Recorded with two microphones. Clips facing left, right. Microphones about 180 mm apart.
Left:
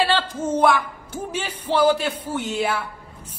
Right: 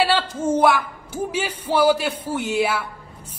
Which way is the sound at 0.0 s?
10° right (ahead or behind).